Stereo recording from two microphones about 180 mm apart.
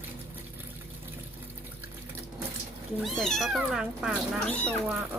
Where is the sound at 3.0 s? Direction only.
Centre (ahead or behind).